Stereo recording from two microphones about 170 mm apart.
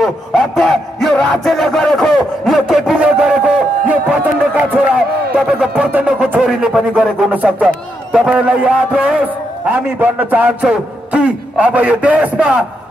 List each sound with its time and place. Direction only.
0.0 s music: centre (ahead or behind)
9.7 s a man's voice: 10° right (ahead or behind)